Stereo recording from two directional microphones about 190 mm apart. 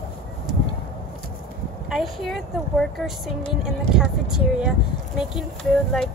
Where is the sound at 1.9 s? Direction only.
Centre (ahead or behind).